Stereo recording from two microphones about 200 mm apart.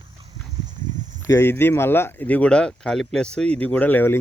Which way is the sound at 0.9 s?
40° right (ahead or behind).